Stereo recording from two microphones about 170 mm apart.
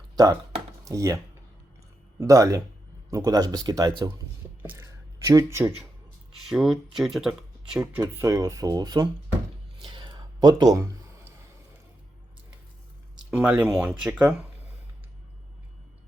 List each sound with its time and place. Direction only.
0.9 s speech: 20° right (ahead or behind)
6.4 s speech: centre (ahead or behind)
7.9 s speech: 15° right (ahead or behind)
9.8 s a sound: 25° right (ahead or behind)
13.3 s speech: 10° right (ahead or behind)